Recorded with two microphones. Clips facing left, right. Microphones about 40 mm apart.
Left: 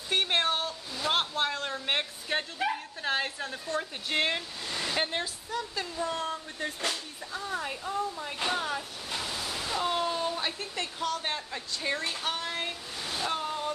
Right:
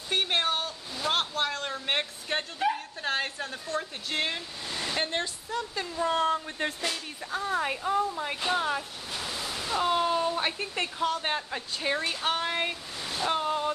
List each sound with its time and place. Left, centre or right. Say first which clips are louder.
0.1 s a sound: even; centre
3.6 s speech: left 1 dB; centre
4.6 s speech: even; centre
5.5 s speech: right 1 dB; centre
6.0 s a woman's voice: right 7 dB; right
8.5 s speech: right 3 dB; centre
13.2 s waves: right 5 dB; right